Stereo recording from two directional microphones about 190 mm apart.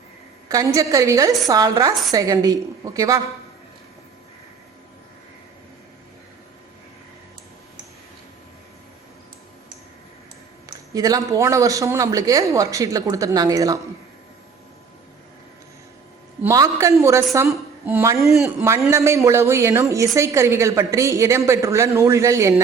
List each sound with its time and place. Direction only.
0.4 s a woman's voice: 20° right (ahead or behind)
10.7 s a woman's voice: 20° right (ahead or behind)
16.4 s a woman's voice: 15° right (ahead or behind)
18.3 s a man's voice: centre (ahead or behind)
18.6 s a woman's voice: 15° right (ahead or behind)